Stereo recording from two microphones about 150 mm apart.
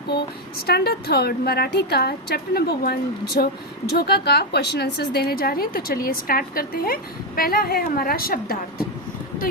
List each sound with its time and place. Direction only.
0.1 s a woman's voice: 90° left